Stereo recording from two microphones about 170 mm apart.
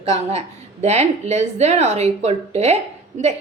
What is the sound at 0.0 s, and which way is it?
A woman's voice, 35° right (ahead or behind).